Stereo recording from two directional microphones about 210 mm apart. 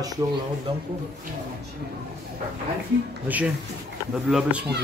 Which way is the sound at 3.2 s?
5° right (ahead or behind).